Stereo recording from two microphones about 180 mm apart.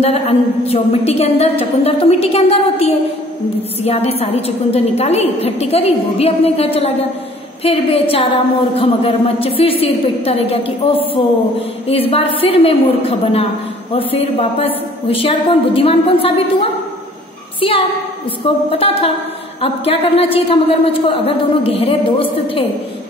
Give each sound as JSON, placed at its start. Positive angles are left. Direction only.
{"t": 0.0, "sound": "a woman's voice", "side_deg": 35}
{"t": 17.6, "sound": "a child's voice", "side_deg": 30}